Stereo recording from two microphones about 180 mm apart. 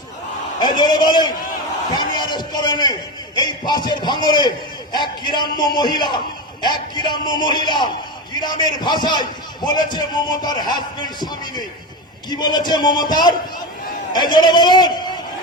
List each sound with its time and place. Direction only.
0.6 s a man's voice: 25° left (ahead or behind)